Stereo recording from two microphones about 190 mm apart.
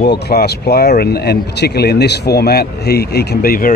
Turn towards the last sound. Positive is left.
turn(degrees=50)  # may be behind; listen again after turning